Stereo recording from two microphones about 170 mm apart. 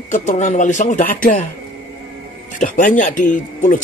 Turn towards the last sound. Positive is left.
turn(degrees=50)  # may be behind; listen again after turning